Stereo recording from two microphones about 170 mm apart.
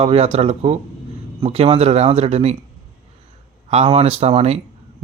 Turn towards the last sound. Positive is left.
turn(degrees=-40)  # may be behind; listen again after turning